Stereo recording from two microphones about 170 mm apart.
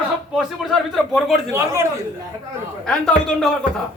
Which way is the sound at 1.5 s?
15° right (ahead or behind).